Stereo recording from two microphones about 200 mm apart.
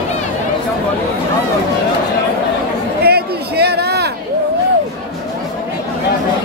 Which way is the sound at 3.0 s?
50° right (ahead or behind).